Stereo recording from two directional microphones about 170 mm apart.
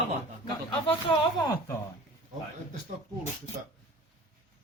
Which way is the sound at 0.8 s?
30° left (ahead or behind).